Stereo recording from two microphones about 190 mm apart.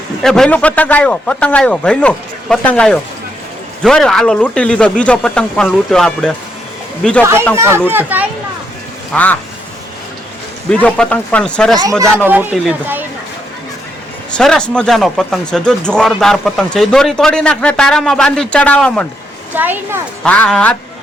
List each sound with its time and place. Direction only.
0.2 s a man's voice: centre (ahead or behind)
7.5 s speech: 15° right (ahead or behind)
9.1 s a man's voice: 10° left (ahead or behind)
10.7 s speech: 5° left (ahead or behind)
11.8 s speech: 15° right (ahead or behind)
14.3 s speech: 5° left (ahead or behind)
19.5 s speech: 10° right (ahead or behind)
20.2 s a man's voice: 5° left (ahead or behind)